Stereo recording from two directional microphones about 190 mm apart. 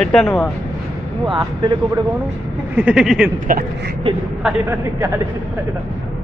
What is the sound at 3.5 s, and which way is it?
Speech, 50° right (ahead or behind).